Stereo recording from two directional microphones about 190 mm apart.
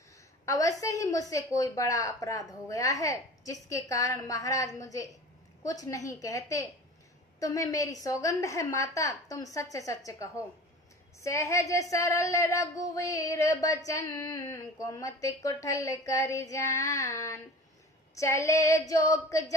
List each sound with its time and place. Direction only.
0.5 s a woman's voice: 15° left (ahead or behind)